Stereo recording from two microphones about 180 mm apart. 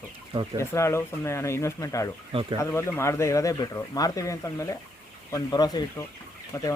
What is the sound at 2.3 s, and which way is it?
Speech, 30° right (ahead or behind).